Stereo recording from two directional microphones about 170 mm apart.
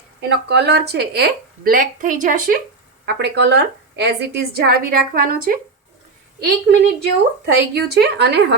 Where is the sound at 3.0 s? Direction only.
85° right; by 5.6 s 55° right (ahead or behind).